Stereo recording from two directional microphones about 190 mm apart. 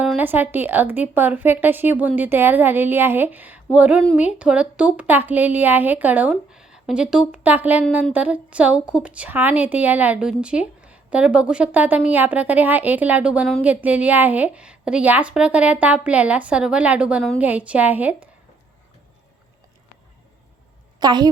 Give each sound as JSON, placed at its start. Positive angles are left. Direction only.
{"t": 0.0, "sound": "a woman's voice", "side_deg": -10}
{"t": 21.0, "sound": "a woman's voice", "side_deg": -20}